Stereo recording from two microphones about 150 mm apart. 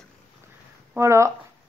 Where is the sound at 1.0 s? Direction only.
20° right (ahead or behind).